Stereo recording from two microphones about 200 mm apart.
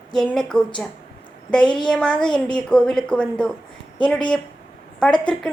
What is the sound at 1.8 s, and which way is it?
Speech, 5° left (ahead or behind).